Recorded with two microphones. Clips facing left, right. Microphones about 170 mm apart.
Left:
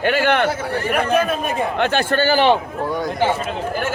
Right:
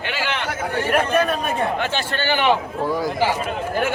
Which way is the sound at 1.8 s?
55° left (ahead or behind).